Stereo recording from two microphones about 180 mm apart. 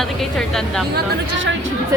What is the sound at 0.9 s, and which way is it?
Speech, 90° right.